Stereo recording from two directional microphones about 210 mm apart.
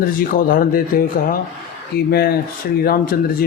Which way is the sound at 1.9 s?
50° left (ahead or behind).